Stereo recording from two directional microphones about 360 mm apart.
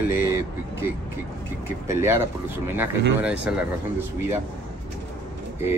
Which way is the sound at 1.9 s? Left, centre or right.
Centre.